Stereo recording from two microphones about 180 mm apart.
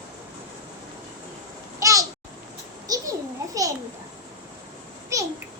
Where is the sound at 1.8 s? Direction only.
20° right (ahead or behind).